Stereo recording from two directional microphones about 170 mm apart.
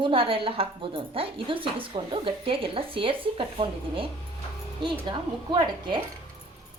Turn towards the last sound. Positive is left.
turn(degrees=-30)  # may be behind; listen again after turning